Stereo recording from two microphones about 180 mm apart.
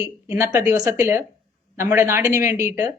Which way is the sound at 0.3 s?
15° right (ahead or behind).